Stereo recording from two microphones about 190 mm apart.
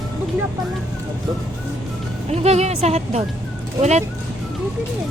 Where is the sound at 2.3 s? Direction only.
35° right (ahead or behind).